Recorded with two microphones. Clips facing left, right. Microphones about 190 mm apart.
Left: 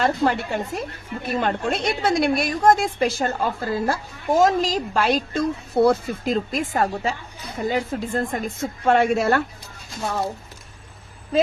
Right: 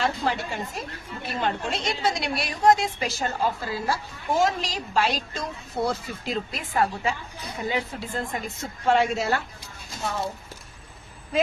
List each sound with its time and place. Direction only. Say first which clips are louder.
0.0 s a woman's voice: left 5 dB; 60° left (ahead or behind)